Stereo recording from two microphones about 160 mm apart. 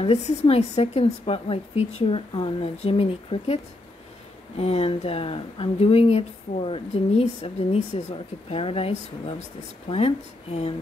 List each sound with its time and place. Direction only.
0.0 s speech: 40° left (ahead or behind)
4.6 s speech: 40° left (ahead or behind)